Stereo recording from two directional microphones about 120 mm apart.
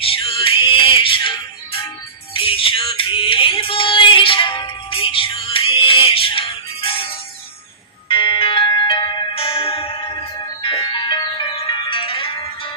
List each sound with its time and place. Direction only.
0.0 s music: 50° left (ahead or behind)
2.3 s music: 50° left (ahead or behind)